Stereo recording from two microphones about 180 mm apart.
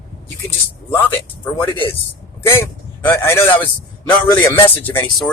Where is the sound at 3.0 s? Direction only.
10° left (ahead or behind).